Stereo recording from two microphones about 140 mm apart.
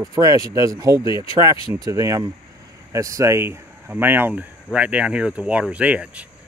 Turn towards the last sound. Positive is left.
turn(degrees=-10)  # may be behind; listen again after turning